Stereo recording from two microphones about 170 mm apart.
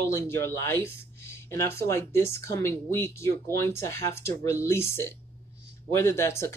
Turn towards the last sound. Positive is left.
turn(degrees=15)  # may be behind; listen again after turning